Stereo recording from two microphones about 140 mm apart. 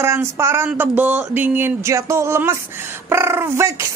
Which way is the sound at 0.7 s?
10° right (ahead or behind).